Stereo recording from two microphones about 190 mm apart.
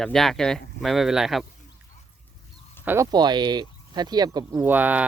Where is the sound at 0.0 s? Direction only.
Centre (ahead or behind).